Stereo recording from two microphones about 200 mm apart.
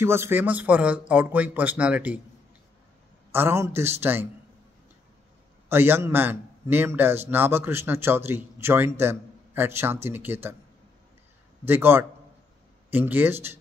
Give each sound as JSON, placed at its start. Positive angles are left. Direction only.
{"t": 0.0, "sound": "a man's voice", "side_deg": -10}
{"t": 3.3, "sound": "a man's voice", "side_deg": -10}
{"t": 5.7, "sound": "a man's voice", "side_deg": -10}
{"t": 11.6, "sound": "a man's voice", "side_deg": -10}